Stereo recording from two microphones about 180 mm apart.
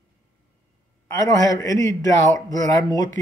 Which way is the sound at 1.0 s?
20° left (ahead or behind).